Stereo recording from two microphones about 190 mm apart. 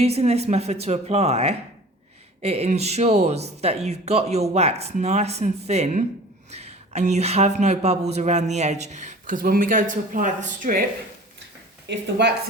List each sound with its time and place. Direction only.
0.0 s speech: 35° right (ahead or behind)
11.9 s speech: 65° right (ahead or behind)